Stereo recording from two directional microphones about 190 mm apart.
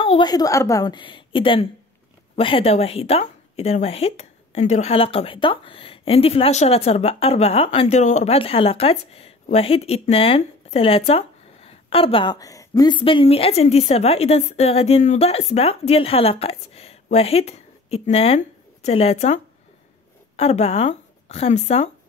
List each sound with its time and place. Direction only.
0.0 s a woman's voice: 25° left (ahead or behind)